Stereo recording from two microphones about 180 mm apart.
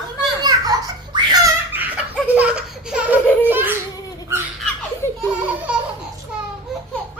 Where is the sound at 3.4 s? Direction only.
10° right (ahead or behind).